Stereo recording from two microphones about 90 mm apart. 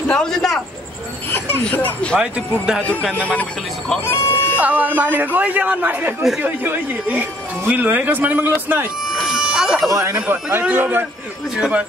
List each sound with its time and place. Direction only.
0.1 s a man's voice: 5° left (ahead or behind)
1.3 s speech: 20° left (ahead or behind)
2.1 s speech: 10° right (ahead or behind)
3.2 s speech: 15° left (ahead or behind)
4.0 s speech: 25° left (ahead or behind)
4.6 s speech: 15° right (ahead or behind)
9.1 s bagpipes: 5° right (ahead or behind)
9.8 s speech: 35° right (ahead or behind)
10.1 s speech: 20° right (ahead or behind)